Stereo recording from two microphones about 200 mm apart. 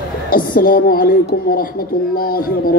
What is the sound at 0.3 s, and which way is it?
A woman's voice, 45° left (ahead or behind).